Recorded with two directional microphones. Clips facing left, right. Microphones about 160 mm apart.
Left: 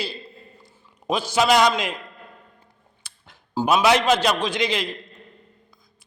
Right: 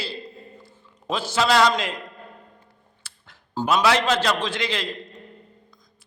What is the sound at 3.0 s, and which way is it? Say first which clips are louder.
A man's voice: left 2 dB; 15° left (ahead or behind).